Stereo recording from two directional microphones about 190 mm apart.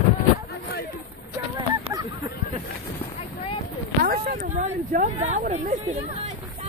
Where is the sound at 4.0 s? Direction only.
50° right (ahead or behind).